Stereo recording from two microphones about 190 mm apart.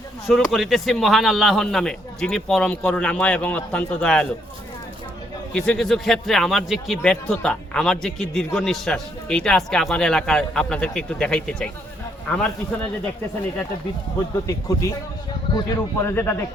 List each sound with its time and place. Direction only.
0.3 s a man's voice: centre (ahead or behind)
5.5 s a man's voice: 5° left (ahead or behind)
14.4 s a man's voice: 15° left (ahead or behind)